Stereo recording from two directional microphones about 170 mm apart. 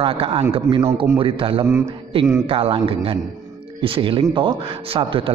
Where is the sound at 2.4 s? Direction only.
35° right (ahead or behind).